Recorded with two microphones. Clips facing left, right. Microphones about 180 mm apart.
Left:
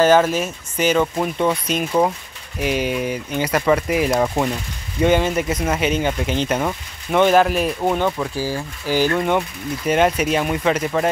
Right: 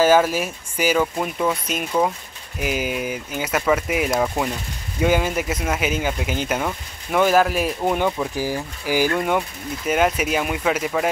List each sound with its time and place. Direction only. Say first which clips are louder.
0.0 s speech: left 2 dB; 10° right (ahead or behind)